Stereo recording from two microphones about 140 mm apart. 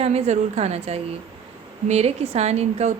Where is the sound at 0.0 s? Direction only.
50° right (ahead or behind).